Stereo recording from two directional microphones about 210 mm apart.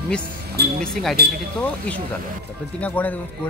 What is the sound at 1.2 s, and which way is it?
Speech, 50° right (ahead or behind).